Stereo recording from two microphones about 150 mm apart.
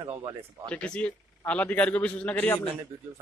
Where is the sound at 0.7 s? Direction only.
10° left (ahead or behind).